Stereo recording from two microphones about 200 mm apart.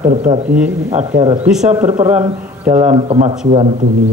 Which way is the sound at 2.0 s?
30° right (ahead or behind).